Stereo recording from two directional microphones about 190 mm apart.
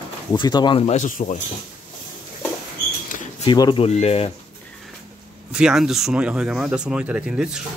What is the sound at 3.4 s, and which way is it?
Speech, 25° left (ahead or behind).